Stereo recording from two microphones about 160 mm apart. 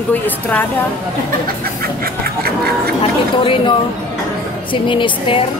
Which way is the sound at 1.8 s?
70° right (ahead or behind).